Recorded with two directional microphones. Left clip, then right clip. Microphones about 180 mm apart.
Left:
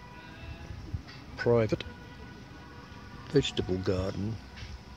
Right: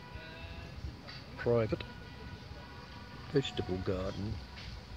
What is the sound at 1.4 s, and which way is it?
Speech, 40° left (ahead or behind).